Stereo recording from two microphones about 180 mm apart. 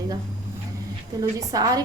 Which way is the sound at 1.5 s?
20° right (ahead or behind).